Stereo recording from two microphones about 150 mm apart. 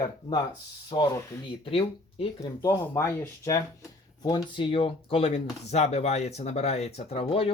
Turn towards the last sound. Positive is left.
turn(degrees=40)  # may be behind; listen again after turning